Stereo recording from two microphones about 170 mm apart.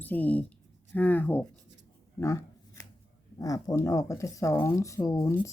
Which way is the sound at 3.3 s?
20° left (ahead or behind).